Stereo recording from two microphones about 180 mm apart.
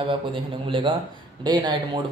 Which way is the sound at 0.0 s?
30° right (ahead or behind).